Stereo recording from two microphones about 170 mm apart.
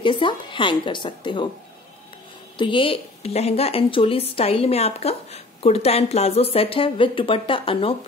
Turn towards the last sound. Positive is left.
turn(degrees=30)  # may be behind; listen again after turning